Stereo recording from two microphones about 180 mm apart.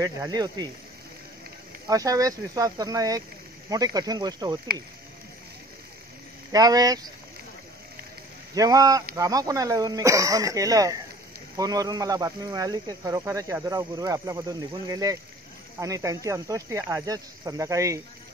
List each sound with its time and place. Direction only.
0.0 s speech: 20° right (ahead or behind)
1.9 s speech: 20° right (ahead or behind)
6.5 s speech: 20° right (ahead or behind)
8.5 s speech: 20° right (ahead or behind)